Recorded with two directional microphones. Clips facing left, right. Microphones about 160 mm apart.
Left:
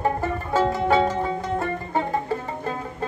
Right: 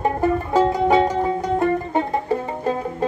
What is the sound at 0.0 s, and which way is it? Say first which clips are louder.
Music: right 5 dB; 15° right (ahead or behind).